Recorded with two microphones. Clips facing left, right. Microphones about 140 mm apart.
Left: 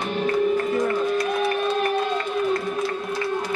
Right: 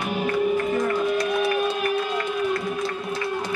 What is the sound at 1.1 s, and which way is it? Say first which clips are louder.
Music: even; 35° left (ahead or behind).